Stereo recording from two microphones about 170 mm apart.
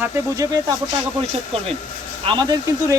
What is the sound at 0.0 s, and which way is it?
Speech, 20° right (ahead or behind).